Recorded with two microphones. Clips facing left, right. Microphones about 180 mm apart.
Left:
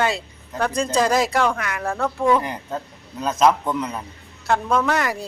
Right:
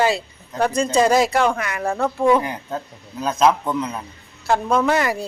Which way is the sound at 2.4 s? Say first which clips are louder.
Right 1 dB; 5° right (ahead or behind).